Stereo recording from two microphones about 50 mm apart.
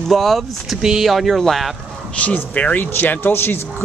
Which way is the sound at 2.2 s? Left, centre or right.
Left.